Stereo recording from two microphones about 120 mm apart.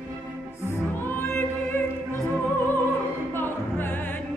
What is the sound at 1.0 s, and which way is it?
Music, 20° left (ahead or behind).